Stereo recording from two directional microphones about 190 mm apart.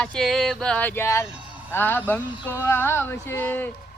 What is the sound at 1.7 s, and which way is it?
Speech, 10° left (ahead or behind).